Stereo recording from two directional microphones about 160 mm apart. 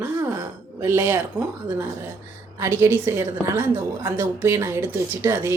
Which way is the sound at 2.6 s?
15° right (ahead or behind).